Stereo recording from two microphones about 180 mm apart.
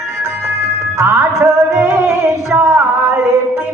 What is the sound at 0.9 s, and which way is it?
Music, 15° right (ahead or behind).